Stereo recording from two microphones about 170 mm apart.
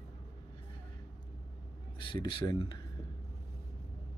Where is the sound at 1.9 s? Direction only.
30° left (ahead or behind).